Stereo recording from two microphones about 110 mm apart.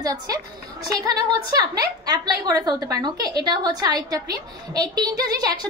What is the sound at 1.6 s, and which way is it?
A woman's voice, 35° right (ahead or behind).